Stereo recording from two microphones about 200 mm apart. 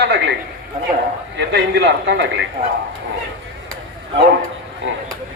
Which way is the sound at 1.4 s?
60° right (ahead or behind).